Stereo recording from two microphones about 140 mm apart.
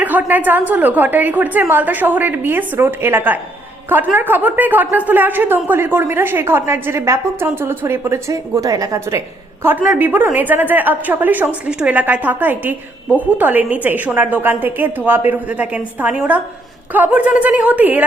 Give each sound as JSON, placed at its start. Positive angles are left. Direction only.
{"t": 0.0, "sound": "a woman's voice", "side_deg": -10}